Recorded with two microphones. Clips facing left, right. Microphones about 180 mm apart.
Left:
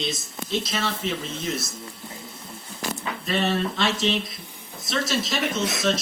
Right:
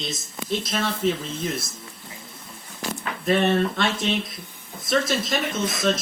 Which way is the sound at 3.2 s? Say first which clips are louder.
Right 4 dB; 55° right (ahead or behind).